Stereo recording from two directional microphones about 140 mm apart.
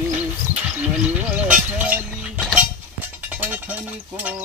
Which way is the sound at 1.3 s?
10° right (ahead or behind).